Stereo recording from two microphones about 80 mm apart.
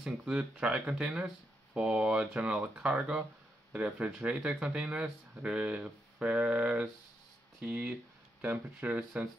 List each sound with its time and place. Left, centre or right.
0.0 s speech: centre